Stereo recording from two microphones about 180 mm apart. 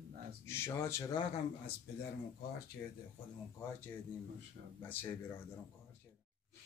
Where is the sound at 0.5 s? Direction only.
15° left (ahead or behind).